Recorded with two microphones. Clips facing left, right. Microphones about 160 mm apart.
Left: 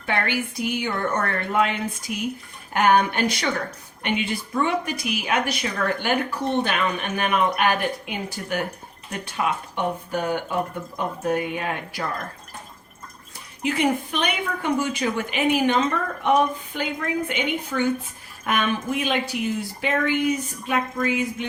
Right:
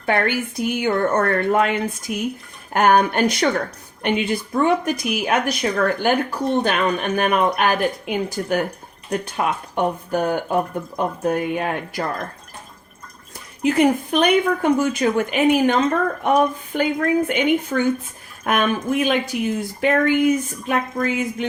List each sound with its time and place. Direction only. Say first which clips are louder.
0.0 s a woman's voice: right 5 dB; 50° right (ahead or behind)
13.6 s a woman's voice: right 6 dB; 45° right (ahead or behind)